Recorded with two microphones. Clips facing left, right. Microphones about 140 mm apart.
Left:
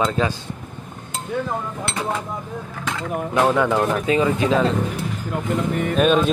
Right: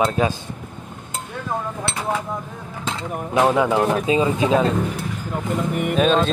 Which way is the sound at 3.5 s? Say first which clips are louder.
Right 1 dB; 15° right (ahead or behind).